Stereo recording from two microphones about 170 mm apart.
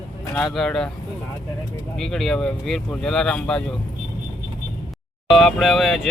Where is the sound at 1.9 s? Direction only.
Centre (ahead or behind).